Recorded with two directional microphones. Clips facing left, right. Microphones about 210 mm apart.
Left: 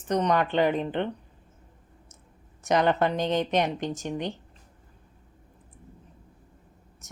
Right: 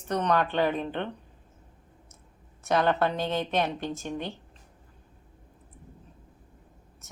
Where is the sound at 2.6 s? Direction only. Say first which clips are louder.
Left 2 dB; 15° left (ahead or behind).